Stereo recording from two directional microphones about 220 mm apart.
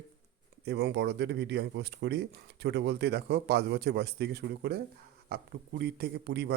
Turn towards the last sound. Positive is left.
turn(degrees=-50)  # may be behind; listen again after turning